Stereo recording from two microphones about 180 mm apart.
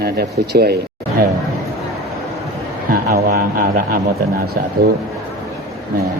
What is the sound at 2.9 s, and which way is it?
A man's voice, 55° right (ahead or behind).